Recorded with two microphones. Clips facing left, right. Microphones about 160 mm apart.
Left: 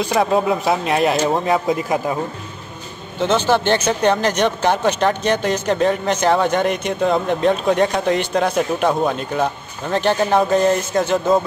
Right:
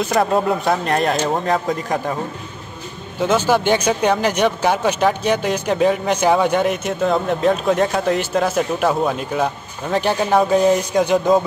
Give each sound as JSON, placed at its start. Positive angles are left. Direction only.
{"t": 0.0, "sound": "speech", "side_deg": 0}
{"t": 3.2, "sound": "speech", "side_deg": -10}